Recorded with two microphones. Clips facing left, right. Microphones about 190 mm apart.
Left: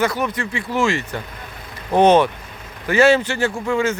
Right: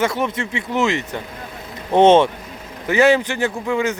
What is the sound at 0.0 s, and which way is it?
Speech, 25° right (ahead or behind).